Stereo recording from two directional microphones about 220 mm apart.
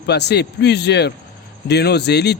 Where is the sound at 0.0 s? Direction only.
50° left (ahead or behind).